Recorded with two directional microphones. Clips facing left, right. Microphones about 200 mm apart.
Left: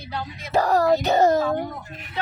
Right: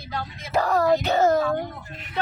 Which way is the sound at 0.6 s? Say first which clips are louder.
Left 1 dB; 40° left (ahead or behind).